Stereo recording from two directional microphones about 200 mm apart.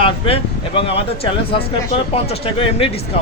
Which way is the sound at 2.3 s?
30° left (ahead or behind).